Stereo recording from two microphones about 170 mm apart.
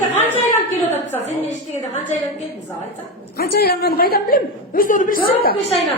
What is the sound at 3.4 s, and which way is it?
A woman's voice, 65° left (ahead or behind).